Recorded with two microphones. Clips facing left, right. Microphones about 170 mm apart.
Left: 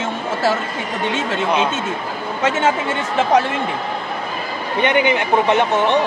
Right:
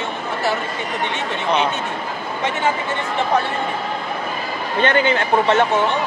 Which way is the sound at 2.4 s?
90° left.